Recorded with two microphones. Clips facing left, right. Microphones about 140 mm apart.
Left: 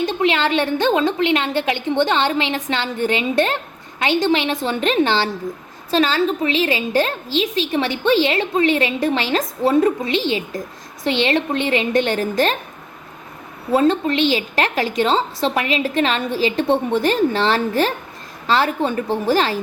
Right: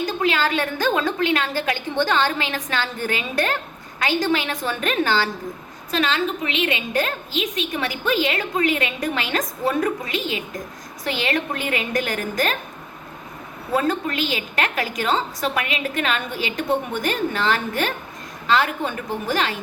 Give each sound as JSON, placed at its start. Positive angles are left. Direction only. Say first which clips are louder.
{"t": 0.0, "sound": "a woman's voice", "louder": "left 3 dB", "side_deg": 25}
{"t": 13.7, "sound": "a woman's voice", "louder": "left 6 dB", "side_deg": 25}